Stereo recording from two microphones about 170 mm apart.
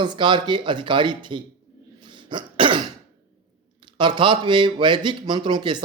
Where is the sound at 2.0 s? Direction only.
30° right (ahead or behind).